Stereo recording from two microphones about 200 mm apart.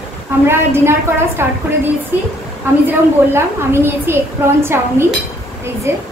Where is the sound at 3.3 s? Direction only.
10° right (ahead or behind).